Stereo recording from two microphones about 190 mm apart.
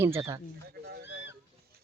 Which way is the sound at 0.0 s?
15° right (ahead or behind).